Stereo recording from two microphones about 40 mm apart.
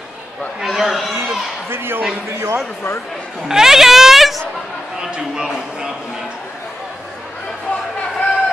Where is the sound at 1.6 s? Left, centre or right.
Right.